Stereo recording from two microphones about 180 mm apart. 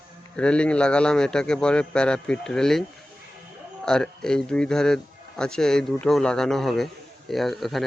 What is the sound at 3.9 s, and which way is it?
Speech, 5° left (ahead or behind).